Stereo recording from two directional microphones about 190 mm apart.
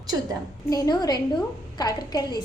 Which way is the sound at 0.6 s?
20° left (ahead or behind).